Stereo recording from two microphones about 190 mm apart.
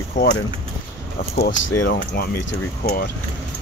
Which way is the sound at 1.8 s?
55° left (ahead or behind).